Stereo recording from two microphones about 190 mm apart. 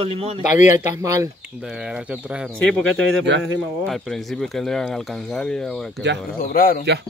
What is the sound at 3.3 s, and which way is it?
Speech, 65° right (ahead or behind).